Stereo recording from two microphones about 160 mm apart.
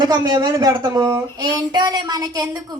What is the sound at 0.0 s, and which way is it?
Speech, 25° right (ahead or behind).